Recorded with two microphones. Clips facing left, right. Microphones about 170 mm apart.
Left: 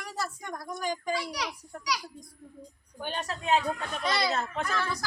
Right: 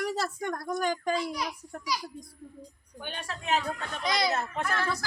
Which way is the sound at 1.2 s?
85° left.